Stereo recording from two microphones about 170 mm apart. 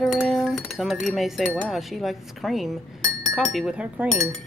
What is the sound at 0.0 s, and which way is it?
Speech, centre (ahead or behind).